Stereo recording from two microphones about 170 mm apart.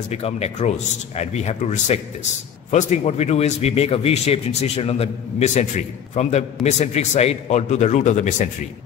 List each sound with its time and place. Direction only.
0.1 s a man's voice: 40° left (ahead or behind)